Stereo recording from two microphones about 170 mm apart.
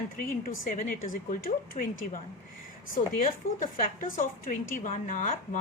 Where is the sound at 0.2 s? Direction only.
55° left (ahead or behind).